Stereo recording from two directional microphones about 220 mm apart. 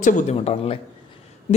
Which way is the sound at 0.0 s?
35° left (ahead or behind).